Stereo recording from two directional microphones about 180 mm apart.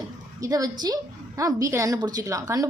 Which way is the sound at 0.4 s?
20° right (ahead or behind).